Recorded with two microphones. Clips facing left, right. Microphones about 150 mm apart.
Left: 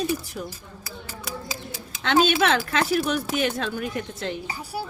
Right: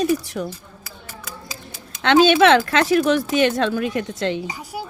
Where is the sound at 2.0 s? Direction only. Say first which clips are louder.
Right 7 dB; 90° right.